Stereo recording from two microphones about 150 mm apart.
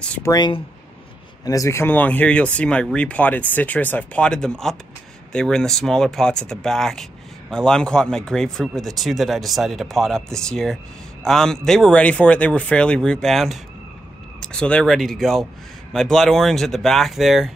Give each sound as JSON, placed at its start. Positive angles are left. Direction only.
{"t": 0.0, "sound": "speech", "side_deg": 10}
{"t": 0.3, "sound": "speech", "side_deg": 30}